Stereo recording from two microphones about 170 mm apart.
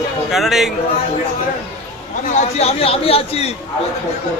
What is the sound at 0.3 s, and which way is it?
Speech, centre (ahead or behind).